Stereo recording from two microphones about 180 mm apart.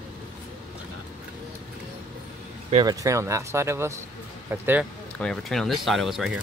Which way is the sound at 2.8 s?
20° right (ahead or behind).